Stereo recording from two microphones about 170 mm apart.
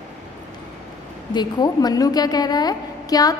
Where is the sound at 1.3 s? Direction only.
25° left (ahead or behind).